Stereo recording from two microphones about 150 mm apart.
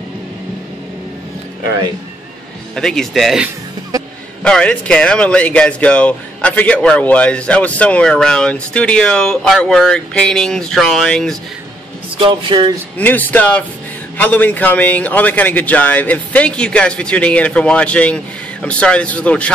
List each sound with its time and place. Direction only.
2.7 s speech: 5° left (ahead or behind)
12.2 s speech: 35° right (ahead or behind)
12.9 s speech: 10° left (ahead or behind)